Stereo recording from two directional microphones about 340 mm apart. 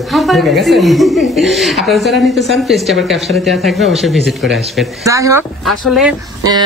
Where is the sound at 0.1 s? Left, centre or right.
Centre.